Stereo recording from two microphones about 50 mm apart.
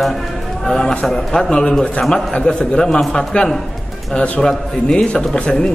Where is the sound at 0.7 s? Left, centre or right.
Centre.